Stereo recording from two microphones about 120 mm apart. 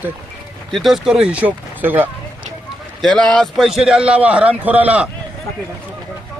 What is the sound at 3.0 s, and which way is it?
Speech, 5° left (ahead or behind).